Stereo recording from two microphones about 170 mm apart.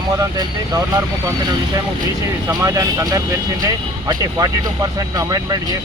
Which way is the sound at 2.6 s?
20° right (ahead or behind).